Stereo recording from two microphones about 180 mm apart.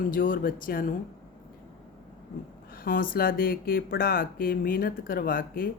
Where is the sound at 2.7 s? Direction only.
55° left (ahead or behind).